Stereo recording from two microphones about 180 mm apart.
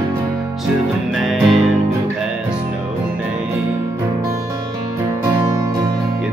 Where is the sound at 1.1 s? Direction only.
Centre (ahead or behind).